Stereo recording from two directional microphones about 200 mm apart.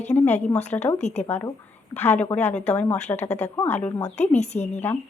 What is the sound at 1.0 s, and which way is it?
Speech, 35° left (ahead or behind).